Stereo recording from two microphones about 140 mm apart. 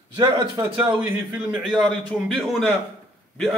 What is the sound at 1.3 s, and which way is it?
Speech, 10° right (ahead or behind).